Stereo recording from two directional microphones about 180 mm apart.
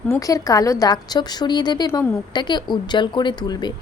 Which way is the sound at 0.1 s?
20° left (ahead or behind).